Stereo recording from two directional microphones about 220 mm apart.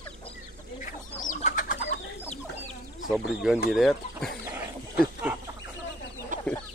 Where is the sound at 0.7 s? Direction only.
40° left (ahead or behind).